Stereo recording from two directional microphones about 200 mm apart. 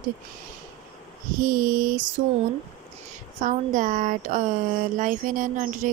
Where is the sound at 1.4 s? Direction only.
45° right (ahead or behind).